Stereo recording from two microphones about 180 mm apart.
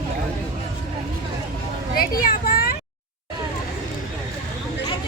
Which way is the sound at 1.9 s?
55° left (ahead or behind).